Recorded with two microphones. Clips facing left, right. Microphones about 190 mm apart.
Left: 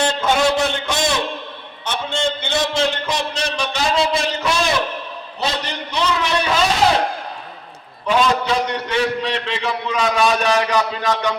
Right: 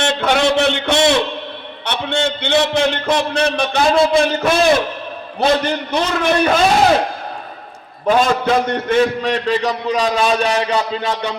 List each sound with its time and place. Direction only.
0.2 s a sound: 70° right (ahead or behind)
1.8 s a man's voice: 65° right (ahead or behind)
8.0 s a man's voice: 50° right (ahead or behind); by 11.3 s 30° right (ahead or behind)